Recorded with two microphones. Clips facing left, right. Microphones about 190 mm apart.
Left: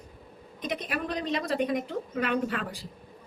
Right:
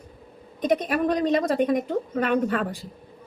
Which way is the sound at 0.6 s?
50° right (ahead or behind).